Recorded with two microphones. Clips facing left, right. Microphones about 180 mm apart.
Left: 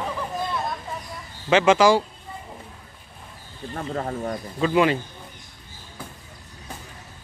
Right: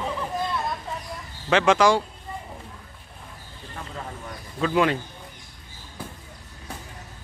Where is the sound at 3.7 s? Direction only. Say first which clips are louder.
Left 9 dB; 50° left (ahead or behind).